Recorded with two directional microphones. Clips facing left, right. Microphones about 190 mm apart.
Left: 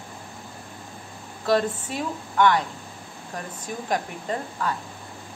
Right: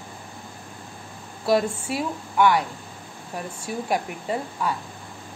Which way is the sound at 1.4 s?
10° right (ahead or behind).